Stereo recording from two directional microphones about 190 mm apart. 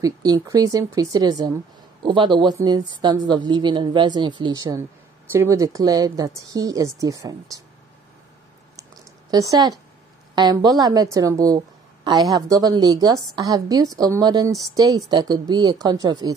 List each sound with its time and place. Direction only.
0.0 s a woman's voice: 20° right (ahead or behind)
8.7 s a sound: 20° right (ahead or behind)
10.3 s a woman's voice: 20° right (ahead or behind)